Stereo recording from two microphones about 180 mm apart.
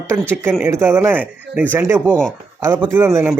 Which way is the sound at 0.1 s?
15° right (ahead or behind).